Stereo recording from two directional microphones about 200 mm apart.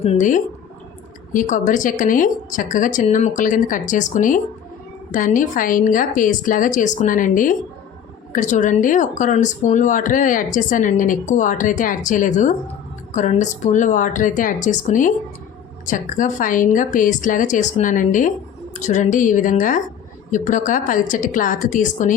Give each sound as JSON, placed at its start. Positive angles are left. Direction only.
{"t": 0.0, "sound": "speech", "side_deg": 35}